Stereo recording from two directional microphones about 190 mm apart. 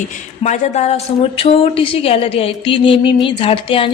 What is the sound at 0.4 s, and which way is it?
Speech, 40° left (ahead or behind).